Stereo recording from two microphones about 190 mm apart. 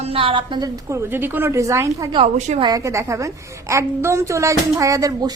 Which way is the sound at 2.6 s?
15° right (ahead or behind).